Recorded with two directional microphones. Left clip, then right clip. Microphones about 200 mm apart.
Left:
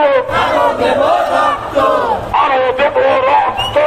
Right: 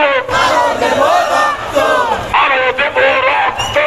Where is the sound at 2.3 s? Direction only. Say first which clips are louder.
Even; 10° left (ahead or behind).